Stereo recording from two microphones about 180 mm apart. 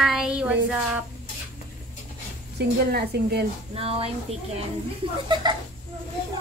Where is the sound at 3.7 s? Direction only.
35° right (ahead or behind).